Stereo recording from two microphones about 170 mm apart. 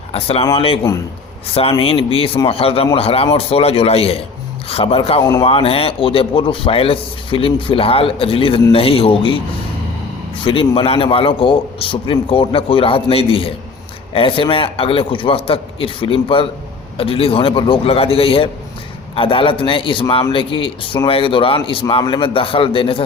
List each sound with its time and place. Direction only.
0.1 s a man's voice: 35° left (ahead or behind)
5.2 s speech: 20° left (ahead or behind)
5.5 s a man's voice: 35° left (ahead or behind)
10.4 s a man's voice: 30° left (ahead or behind)